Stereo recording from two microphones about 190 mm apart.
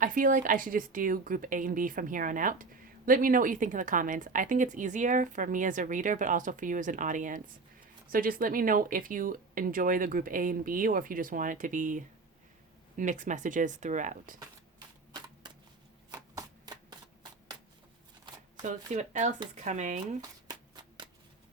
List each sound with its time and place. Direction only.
0.0 s a woman's voice: 45° right (ahead or behind)
16.1 s shuffling cards: 20° right (ahead or behind)
18.5 s shuffling cards: 40° right (ahead or behind)
18.9 s speech: 40° right (ahead or behind)
20.5 s shuffling cards: 25° right (ahead or behind)